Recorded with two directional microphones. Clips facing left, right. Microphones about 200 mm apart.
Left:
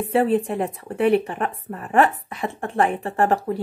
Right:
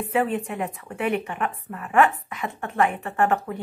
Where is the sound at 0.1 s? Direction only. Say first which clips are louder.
Left 5 dB; 35° left (ahead or behind).